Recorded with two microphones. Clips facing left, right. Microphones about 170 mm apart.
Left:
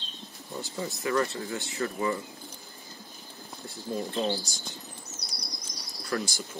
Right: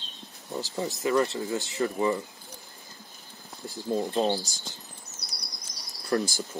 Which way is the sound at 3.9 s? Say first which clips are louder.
Right 4 dB; 35° right (ahead or behind).